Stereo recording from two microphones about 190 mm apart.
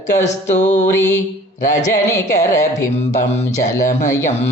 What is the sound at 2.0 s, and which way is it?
Mantra, 15° left (ahead or behind).